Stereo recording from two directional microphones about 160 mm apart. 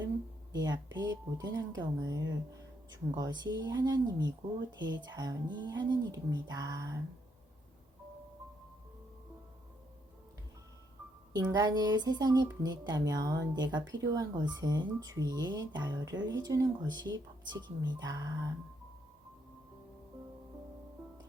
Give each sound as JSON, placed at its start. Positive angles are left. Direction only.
{"t": 0.5, "sound": "speech", "side_deg": -25}
{"t": 11.3, "sound": "speech", "side_deg": -25}